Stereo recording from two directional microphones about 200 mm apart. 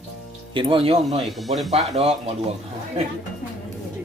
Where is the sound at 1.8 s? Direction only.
30° right (ahead or behind).